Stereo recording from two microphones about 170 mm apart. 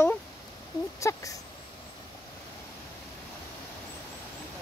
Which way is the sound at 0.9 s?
20° left (ahead or behind).